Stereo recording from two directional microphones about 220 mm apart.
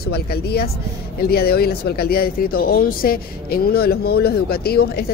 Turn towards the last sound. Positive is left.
turn(degrees=45)  # may be behind; listen again after turning